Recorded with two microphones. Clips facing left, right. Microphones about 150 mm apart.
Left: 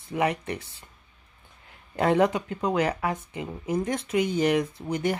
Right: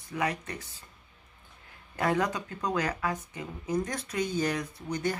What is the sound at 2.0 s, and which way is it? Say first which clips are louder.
Speech: left 6 dB; 25° left (ahead or behind).